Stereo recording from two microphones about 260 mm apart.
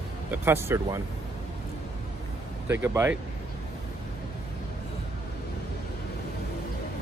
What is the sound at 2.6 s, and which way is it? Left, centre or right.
Speech, centre.